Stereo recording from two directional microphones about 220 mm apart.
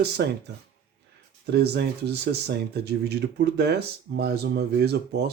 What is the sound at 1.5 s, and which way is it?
Speech, 50° right (ahead or behind).